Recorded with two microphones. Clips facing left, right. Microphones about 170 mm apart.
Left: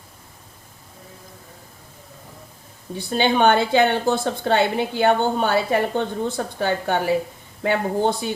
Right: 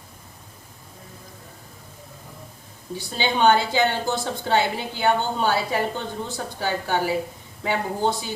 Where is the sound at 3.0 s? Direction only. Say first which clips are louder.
Left 4 dB; 55° left (ahead or behind).